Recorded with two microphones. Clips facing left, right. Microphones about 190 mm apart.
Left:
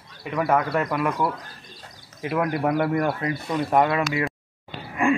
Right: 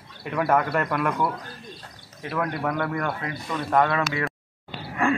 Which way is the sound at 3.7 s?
15° left (ahead or behind).